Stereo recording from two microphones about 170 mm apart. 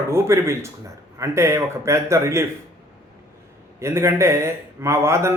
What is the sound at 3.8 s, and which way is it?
Speech, 15° right (ahead or behind).